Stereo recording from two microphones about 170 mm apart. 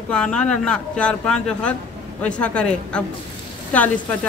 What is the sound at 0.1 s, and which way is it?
Speech, 5° left (ahead or behind).